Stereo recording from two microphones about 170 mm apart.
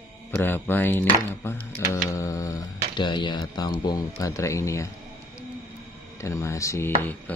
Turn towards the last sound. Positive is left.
turn(degrees=15)  # may be behind; listen again after turning